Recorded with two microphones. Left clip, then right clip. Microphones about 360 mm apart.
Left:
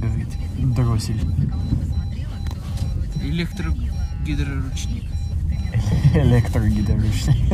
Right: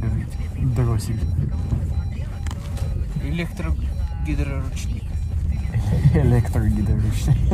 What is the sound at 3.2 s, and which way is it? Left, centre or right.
Speech, centre.